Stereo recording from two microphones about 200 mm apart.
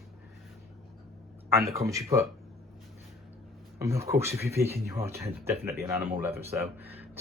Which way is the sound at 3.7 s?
15° right (ahead or behind).